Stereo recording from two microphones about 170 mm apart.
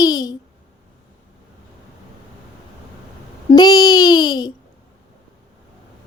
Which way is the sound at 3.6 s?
20° left (ahead or behind).